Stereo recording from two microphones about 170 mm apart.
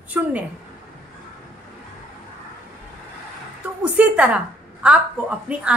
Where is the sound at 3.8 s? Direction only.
10° right (ahead or behind).